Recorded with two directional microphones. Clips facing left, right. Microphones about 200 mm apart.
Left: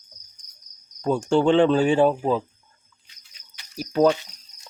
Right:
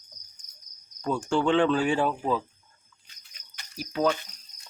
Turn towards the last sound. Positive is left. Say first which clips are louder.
# left 7 dB
turn(degrees=40)  # may be behind; listen again after turning